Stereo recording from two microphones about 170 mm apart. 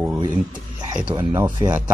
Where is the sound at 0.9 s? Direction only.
25° right (ahead or behind).